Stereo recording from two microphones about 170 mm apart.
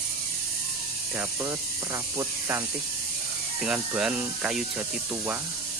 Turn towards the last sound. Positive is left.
turn(degrees=-10)  # may be behind; listen again after turning